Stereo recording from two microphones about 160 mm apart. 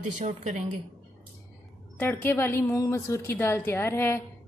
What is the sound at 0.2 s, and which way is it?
Speech, 50° right (ahead or behind).